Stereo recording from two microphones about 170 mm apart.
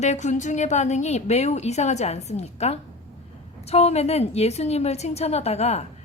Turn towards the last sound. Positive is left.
turn(degrees=40)  # may be behind; listen again after turning